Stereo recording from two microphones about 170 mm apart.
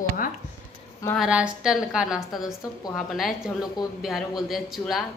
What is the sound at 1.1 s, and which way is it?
A woman's voice, 5° right (ahead or behind).